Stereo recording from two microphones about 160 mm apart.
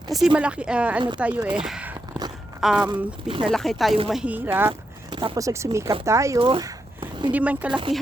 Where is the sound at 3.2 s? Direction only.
35° right (ahead or behind).